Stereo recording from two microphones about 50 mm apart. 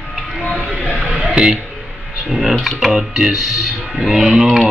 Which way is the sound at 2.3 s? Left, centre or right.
Centre.